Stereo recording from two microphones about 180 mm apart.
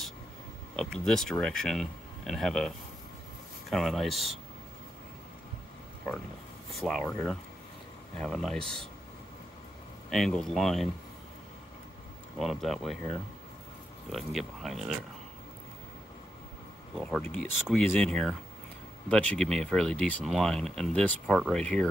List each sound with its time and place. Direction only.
0.7 s speech: 5° left (ahead or behind)
3.7 s speech: centre (ahead or behind)
6.8 s speech: centre (ahead or behind)
8.2 s speech: centre (ahead or behind)
10.0 s speech: centre (ahead or behind)
12.4 s speech: centre (ahead or behind)
14.1 s speech: centre (ahead or behind)
17.0 s speech: 5° left (ahead or behind)